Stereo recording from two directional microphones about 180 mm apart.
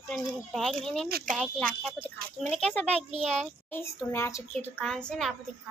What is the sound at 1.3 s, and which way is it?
A child's voice, centre (ahead or behind).